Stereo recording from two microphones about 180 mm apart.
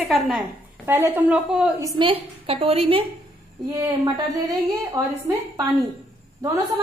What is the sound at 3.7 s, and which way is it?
Speech, 20° right (ahead or behind).